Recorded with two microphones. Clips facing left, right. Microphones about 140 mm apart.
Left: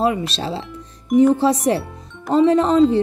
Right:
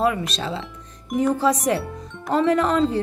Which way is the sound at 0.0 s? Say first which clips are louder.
Left 2 dB; 30° left (ahead or behind).